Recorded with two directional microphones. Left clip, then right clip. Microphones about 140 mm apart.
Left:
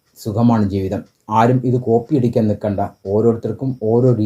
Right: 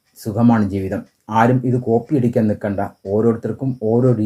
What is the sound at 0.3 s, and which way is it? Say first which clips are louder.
Speech: even; 25° left (ahead or behind).